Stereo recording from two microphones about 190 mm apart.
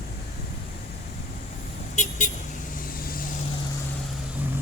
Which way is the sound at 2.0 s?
40° left (ahead or behind).